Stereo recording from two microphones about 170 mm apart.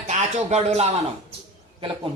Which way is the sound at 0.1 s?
40° right (ahead or behind).